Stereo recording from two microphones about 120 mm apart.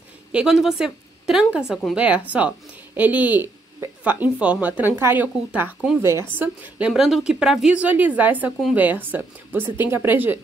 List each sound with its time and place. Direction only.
0.3 s a woman's voice: 5° right (ahead or behind)
6.9 s a woman's voice: 5° right (ahead or behind)